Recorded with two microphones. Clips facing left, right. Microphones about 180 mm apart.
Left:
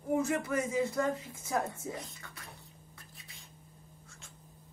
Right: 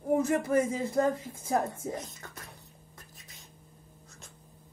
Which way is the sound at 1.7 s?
45° right (ahead or behind).